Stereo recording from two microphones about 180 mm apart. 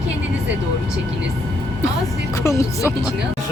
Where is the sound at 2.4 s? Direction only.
15° left (ahead or behind).